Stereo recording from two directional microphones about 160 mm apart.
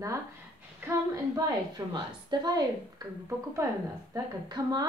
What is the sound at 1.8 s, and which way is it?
A woman's voice, 25° right (ahead or behind).